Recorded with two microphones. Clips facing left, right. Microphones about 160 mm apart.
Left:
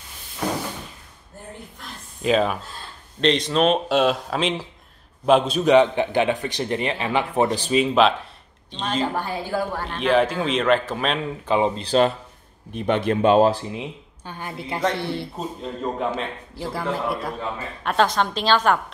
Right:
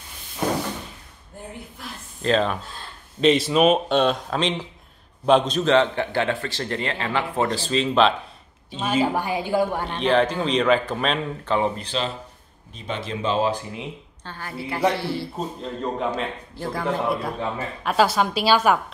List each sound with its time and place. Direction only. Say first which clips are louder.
2.2 s a man's voice: left 1 dB; 5° left (ahead or behind)
3.2 s a man's voice: right 2 dB; 5° right (ahead or behind)
8.7 s a woman's voice: right 2 dB; 10° right (ahead or behind)
9.8 s speech: even; 5° left (ahead or behind)
11.4 s a man's voice: left 3 dB; 15° left (ahead or behind)
12.7 s speech: left 9 dB; 60° left (ahead or behind)
13.7 s speech: left 2 dB; 15° left (ahead or behind)
15.3 s a man's voice: even; centre (ahead or behind)